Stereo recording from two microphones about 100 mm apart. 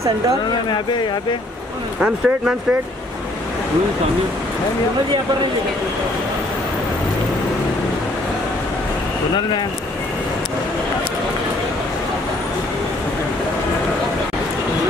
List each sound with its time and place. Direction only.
2.0 s speech: 10° right (ahead or behind)